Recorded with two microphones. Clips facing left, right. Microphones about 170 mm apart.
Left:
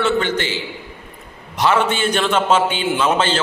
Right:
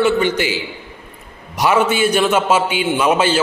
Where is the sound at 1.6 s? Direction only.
10° right (ahead or behind).